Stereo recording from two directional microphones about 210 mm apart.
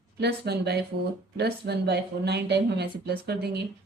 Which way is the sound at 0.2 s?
50° right (ahead or behind).